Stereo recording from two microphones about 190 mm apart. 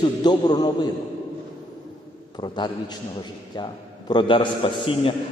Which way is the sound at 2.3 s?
25° left (ahead or behind).